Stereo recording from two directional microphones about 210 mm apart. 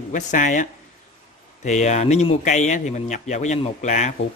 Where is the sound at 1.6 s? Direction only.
35° left (ahead or behind).